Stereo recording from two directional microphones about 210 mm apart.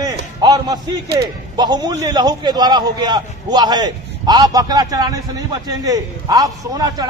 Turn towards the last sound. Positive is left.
turn(degrees=-20)  # may be behind; listen again after turning